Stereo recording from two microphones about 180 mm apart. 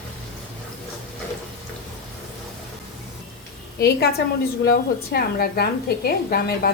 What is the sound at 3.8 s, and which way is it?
A woman's voice, 65° left (ahead or behind).